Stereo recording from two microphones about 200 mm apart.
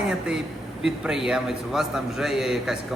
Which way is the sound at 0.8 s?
Centre (ahead or behind).